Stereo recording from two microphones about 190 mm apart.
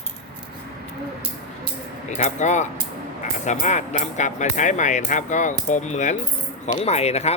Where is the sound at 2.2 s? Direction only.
40° left (ahead or behind).